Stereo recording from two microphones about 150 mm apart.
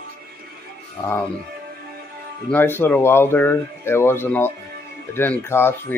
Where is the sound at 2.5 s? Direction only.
15° left (ahead or behind).